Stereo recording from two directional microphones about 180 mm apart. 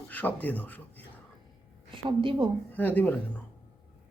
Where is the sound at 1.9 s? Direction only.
30° right (ahead or behind).